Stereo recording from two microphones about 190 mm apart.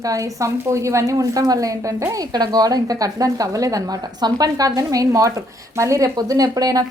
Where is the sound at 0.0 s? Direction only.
15° right (ahead or behind).